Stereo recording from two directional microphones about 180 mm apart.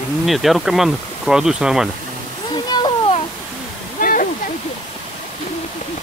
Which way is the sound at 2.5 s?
25° left (ahead or behind).